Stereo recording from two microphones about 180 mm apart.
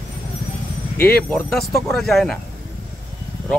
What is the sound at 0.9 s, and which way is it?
Speech, 10° left (ahead or behind).